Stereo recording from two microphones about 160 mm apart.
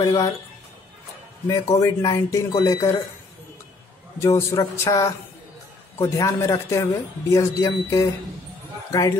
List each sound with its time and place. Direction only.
0.0 s speech: 25° left (ahead or behind)
1.5 s speech: 20° left (ahead or behind)
4.2 s speech: 20° left (ahead or behind)